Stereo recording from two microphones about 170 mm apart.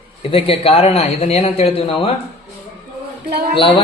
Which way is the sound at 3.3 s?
65° right (ahead or behind).